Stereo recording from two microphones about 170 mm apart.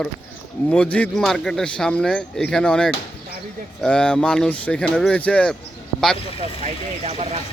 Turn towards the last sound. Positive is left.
turn(degrees=-40)  # may be behind; listen again after turning